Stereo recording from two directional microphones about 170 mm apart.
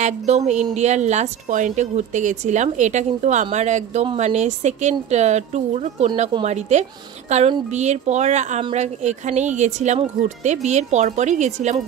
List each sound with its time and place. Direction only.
0.0 s a woman's voice: 40° right (ahead or behind)